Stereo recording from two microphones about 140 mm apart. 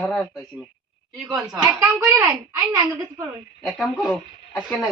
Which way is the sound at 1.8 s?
20° right (ahead or behind).